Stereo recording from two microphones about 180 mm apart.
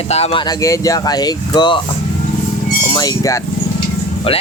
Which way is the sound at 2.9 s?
20° left (ahead or behind).